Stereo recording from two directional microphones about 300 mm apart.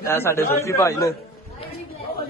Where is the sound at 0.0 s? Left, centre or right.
Centre.